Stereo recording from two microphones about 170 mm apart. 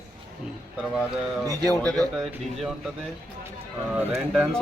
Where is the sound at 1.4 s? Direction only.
20° right (ahead or behind).